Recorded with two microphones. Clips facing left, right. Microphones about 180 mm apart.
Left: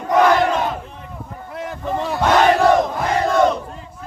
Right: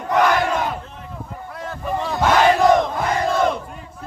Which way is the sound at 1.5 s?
15° left (ahead or behind).